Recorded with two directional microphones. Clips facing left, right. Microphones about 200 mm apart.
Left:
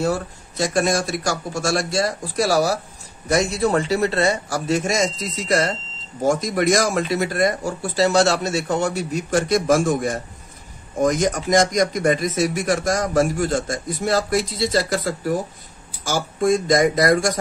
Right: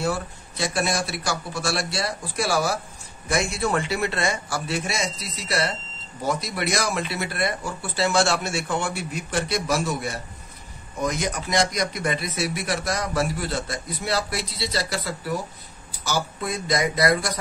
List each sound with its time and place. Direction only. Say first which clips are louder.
0.0 s a man's voice: left 4 dB; 45° left (ahead or behind)